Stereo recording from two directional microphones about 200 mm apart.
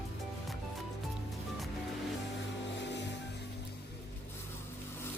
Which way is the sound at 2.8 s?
60° left (ahead or behind).